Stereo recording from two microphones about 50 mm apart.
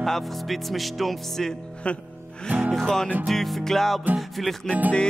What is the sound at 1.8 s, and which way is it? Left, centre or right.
Speech, left.